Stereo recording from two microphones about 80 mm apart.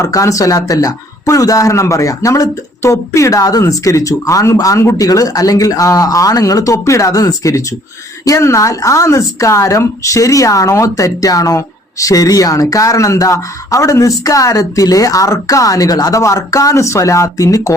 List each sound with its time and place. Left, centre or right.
0.0 s speech: left